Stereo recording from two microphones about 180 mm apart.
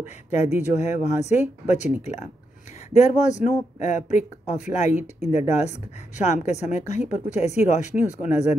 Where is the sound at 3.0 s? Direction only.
40° left (ahead or behind).